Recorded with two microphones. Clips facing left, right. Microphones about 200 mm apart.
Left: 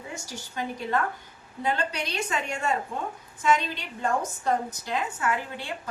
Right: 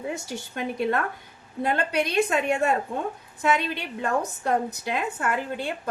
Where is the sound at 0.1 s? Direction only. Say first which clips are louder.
Right 6 dB; 60° right (ahead or behind).